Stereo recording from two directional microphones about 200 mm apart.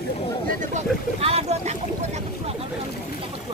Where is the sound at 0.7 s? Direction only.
30° right (ahead or behind).